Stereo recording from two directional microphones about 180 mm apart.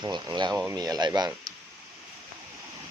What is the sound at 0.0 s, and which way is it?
Speech, 25° right (ahead or behind).